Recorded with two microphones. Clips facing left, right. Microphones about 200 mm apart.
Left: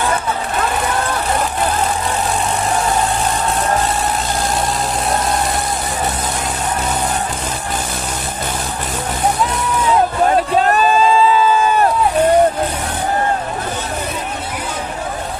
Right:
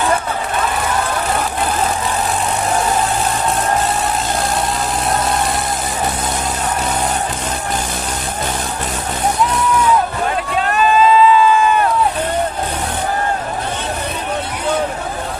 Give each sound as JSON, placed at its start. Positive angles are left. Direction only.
{"t": 10.3, "sound": "run", "side_deg": 40}